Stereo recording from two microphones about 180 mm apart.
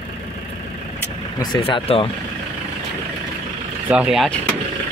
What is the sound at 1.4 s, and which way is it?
Speech, 25° left (ahead or behind).